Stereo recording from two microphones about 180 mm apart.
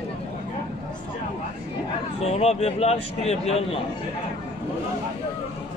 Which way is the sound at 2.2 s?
35° left (ahead or behind).